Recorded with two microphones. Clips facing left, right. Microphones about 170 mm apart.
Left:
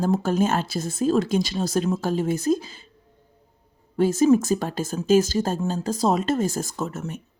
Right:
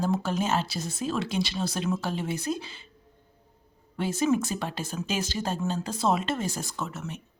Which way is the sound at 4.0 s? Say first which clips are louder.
Left 8 dB; 45° left (ahead or behind).